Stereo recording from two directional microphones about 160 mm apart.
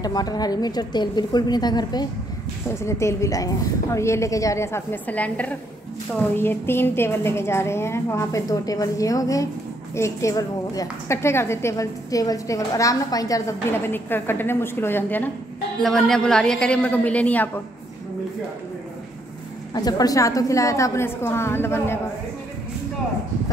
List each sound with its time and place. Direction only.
0.0 s a woman's voice: 25° left (ahead or behind)
19.7 s a woman's voice: 25° left (ahead or behind)